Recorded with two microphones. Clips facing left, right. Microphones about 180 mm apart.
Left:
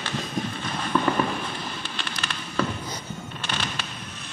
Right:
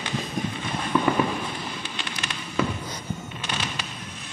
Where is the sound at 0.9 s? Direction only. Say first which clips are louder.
Right 1 dB; 10° right (ahead or behind).